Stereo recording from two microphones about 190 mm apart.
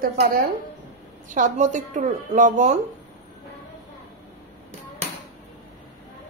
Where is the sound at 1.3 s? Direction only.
40° right (ahead or behind).